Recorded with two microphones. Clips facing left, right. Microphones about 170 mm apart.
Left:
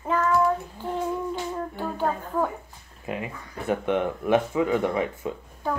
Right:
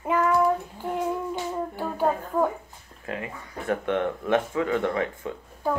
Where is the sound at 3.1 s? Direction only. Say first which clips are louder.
Left 1 dB; 5° left (ahead or behind).